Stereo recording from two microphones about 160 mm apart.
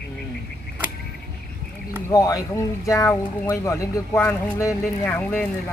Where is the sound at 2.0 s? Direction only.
20° left (ahead or behind).